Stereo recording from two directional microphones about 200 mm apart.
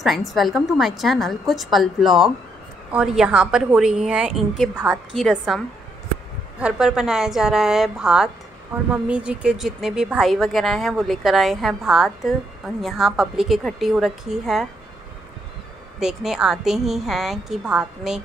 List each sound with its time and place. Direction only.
0.0 s a woman's voice: centre (ahead or behind)
6.6 s a woman's voice: 5° right (ahead or behind)
16.0 s a woman's voice: 5° right (ahead or behind)